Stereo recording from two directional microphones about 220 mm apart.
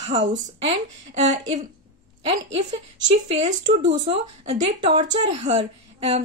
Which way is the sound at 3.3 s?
30° right (ahead or behind).